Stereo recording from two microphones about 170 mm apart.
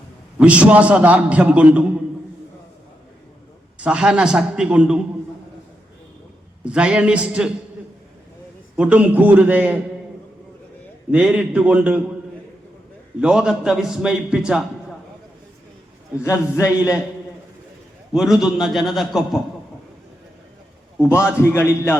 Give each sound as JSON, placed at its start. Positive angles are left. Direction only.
{"t": 0.3, "sound": "a man's voice", "side_deg": -5}
{"t": 3.8, "sound": "a man's voice", "side_deg": -5}
{"t": 6.7, "sound": "a man's voice", "side_deg": -5}
{"t": 8.7, "sound": "a man's voice", "side_deg": -5}
{"t": 11.1, "sound": "a man's voice", "side_deg": -5}
{"t": 13.1, "sound": "a man's voice", "side_deg": -5}
{"t": 16.2, "sound": "a man's voice", "side_deg": 15}
{"t": 18.1, "sound": "a man's voice", "side_deg": -5}
{"t": 21.3, "sound": "a man's voice", "side_deg": 15}